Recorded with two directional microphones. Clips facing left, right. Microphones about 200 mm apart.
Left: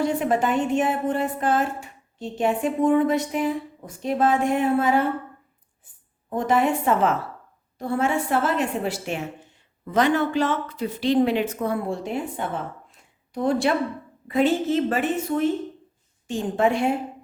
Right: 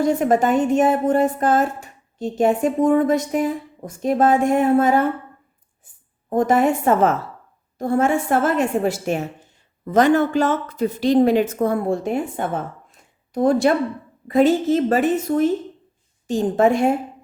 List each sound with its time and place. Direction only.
0.0 s a woman's voice: 45° right (ahead or behind)
6.3 s a woman's voice: 45° right (ahead or behind)
12.9 s a sound: 45° right (ahead or behind)
14.3 s a woman's voice: 40° right (ahead or behind)